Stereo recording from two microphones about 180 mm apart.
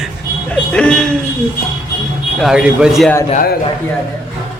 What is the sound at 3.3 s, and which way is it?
Speech, 55° left (ahead or behind).